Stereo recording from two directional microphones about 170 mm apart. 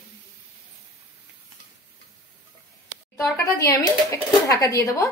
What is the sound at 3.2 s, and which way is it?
Speech, 20° left (ahead or behind).